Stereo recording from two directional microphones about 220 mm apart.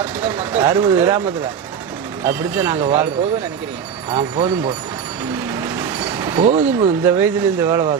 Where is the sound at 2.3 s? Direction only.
5° right (ahead or behind).